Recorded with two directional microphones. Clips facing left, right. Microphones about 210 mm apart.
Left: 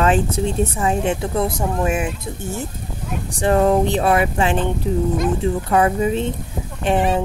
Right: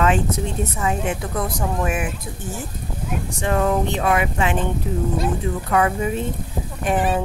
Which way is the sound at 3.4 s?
35° left (ahead or behind).